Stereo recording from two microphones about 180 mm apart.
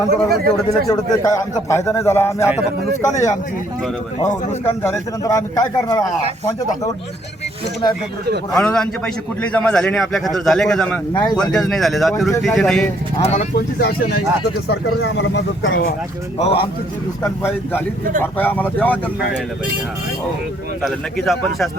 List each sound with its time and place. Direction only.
0.1 s speech: 60° right (ahead or behind)
0.9 s a man's voice: 20° left (ahead or behind)
4.8 s a man's voice: 15° left (ahead or behind)
8.5 s a man's voice: 5° left (ahead or behind)
11.1 s speech: 25° left (ahead or behind)
11.5 s a man's voice: centre (ahead or behind)
13.2 s speech: 40° left (ahead or behind)
13.6 s speech: 60° left (ahead or behind); by 16.0 s 80° left
16.4 s speech: 35° left (ahead or behind)
17.2 s a man's voice: 10° left (ahead or behind)
20.8 s a man's voice: centre (ahead or behind)